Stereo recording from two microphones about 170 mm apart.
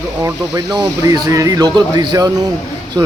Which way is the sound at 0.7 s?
25° right (ahead or behind).